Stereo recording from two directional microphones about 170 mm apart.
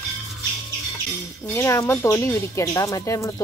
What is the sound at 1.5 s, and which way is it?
Speech, 15° left (ahead or behind).